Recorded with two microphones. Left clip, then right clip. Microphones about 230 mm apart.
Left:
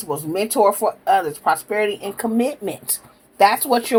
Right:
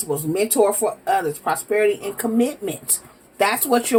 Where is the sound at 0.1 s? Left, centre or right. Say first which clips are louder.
Even; left.